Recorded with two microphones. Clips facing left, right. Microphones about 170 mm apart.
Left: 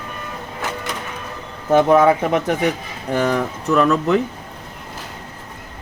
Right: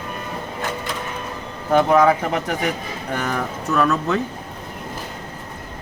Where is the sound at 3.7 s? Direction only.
20° left (ahead or behind).